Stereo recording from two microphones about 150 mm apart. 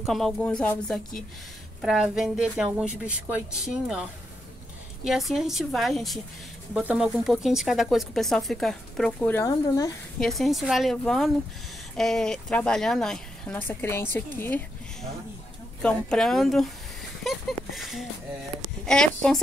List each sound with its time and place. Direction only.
0.0 s speech: centre (ahead or behind)
9.4 s speech: 20° left (ahead or behind)
10.1 s speech: centre (ahead or behind)
15.8 s speech: 5° left (ahead or behind)
18.9 s speech: 5° left (ahead or behind)